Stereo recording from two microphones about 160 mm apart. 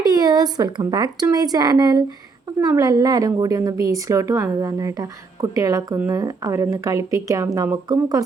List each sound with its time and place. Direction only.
0.0 s a woman's voice: 25° right (ahead or behind)